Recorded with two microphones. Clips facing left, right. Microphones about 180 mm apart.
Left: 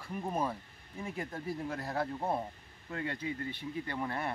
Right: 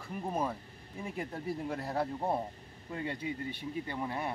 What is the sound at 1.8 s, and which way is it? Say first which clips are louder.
Speech: right 1 dB; 25° right (ahead or behind).